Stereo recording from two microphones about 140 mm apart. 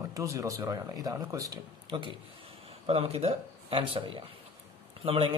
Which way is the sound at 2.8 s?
45° right (ahead or behind).